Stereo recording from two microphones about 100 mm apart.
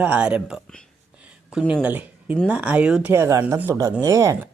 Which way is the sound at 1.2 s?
10° right (ahead or behind).